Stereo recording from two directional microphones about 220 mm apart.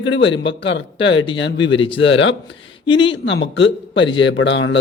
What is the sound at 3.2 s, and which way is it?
A man's voice, 55° left (ahead or behind).